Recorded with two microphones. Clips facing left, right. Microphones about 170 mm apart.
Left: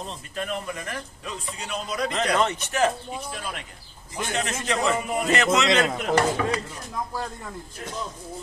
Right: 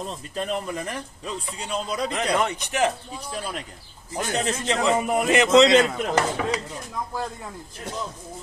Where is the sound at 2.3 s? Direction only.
15° right (ahead or behind).